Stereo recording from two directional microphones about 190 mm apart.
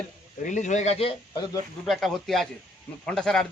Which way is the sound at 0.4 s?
40° left (ahead or behind).